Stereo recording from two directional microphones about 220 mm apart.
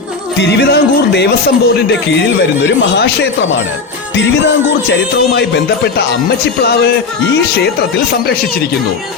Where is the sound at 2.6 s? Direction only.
55° left (ahead or behind).